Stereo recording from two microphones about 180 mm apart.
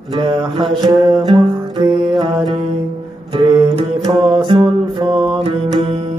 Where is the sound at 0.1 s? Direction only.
25° right (ahead or behind).